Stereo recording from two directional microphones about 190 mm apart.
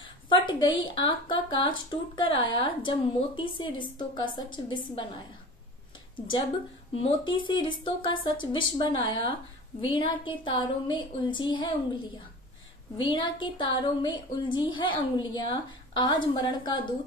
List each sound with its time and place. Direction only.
0.3 s a woman's voice: 25° left (ahead or behind)
6.1 s a woman's voice: 25° left (ahead or behind)
12.9 s a woman's voice: 25° left (ahead or behind)